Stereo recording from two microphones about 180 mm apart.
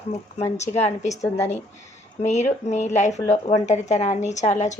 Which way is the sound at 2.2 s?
40° left (ahead or behind).